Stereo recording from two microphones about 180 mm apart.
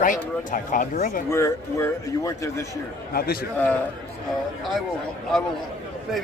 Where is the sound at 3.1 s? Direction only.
55° left (ahead or behind).